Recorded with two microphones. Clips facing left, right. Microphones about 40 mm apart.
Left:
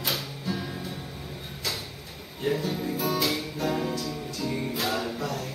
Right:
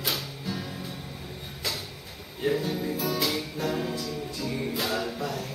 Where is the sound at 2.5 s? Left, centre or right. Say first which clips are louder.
Even; centre.